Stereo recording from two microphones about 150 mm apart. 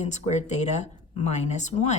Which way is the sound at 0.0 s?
50° left (ahead or behind).